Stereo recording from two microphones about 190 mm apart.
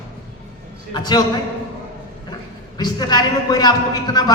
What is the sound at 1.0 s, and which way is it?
Speech, 20° left (ahead or behind).